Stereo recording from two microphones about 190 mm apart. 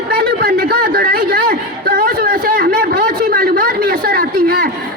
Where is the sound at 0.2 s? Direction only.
50° right (ahead or behind).